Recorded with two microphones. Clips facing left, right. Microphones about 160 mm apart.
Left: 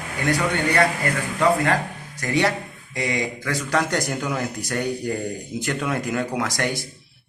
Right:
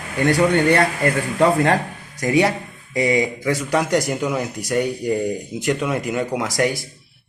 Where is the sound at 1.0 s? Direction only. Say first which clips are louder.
Right 4 dB; 35° right (ahead or behind).